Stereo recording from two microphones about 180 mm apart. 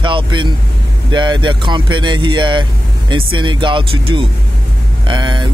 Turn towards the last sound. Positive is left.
turn(degrees=-25)  # may be behind; listen again after turning